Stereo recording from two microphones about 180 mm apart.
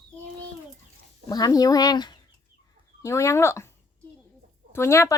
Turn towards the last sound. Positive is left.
turn(degrees=15)  # may be behind; listen again after turning